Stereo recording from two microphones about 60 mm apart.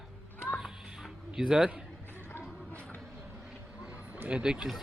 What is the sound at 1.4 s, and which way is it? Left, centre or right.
Speech, centre.